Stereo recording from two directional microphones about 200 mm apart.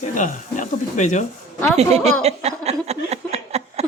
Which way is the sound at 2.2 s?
35° right (ahead or behind).